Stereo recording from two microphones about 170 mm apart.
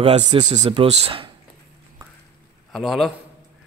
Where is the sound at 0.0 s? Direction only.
40° right (ahead or behind).